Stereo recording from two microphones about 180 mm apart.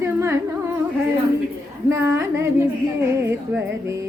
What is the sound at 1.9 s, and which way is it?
Speech, 15° right (ahead or behind).